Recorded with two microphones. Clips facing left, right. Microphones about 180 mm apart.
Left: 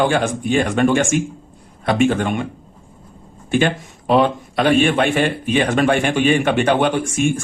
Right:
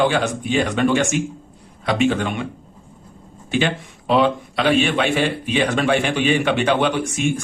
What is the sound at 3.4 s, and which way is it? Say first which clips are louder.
Speech: left 3 dB; 50° left (ahead or behind).